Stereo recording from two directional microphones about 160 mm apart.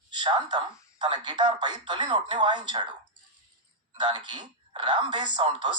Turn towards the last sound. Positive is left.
turn(degrees=-30)  # may be behind; listen again after turning